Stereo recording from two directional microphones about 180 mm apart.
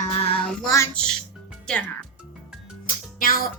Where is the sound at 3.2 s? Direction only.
50° left (ahead or behind).